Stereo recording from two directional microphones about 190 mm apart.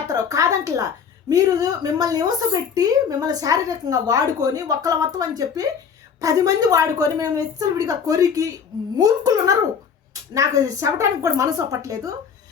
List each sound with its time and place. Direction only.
0.1 s music: 15° right (ahead or behind)
1.3 s a woman's voice: 20° right (ahead or behind)